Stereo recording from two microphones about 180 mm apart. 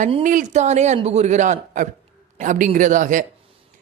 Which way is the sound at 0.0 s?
45° right (ahead or behind).